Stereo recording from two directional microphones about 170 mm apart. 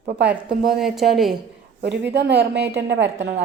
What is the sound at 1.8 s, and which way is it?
Speech, 85° right.